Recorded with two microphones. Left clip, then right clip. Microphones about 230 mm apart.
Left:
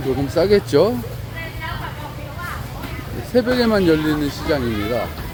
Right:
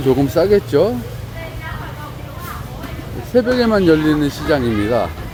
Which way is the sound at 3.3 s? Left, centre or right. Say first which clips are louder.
Right 3 dB; centre.